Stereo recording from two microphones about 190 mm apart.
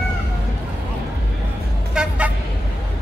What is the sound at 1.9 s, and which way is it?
Vehicle, 5° right (ahead or behind).